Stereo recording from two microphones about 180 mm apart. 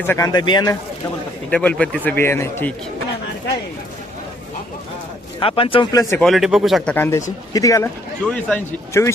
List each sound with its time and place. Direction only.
0.1 s speech: 20° left (ahead or behind)
1.5 s speech: 5° left (ahead or behind)
5.4 s speech: 30° left (ahead or behind)
6.1 s speech: centre (ahead or behind)
6.9 s speech: 15° left (ahead or behind)
8.2 s speech: 5° left (ahead or behind)